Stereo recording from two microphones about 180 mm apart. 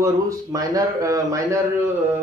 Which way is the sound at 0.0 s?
20° right (ahead or behind).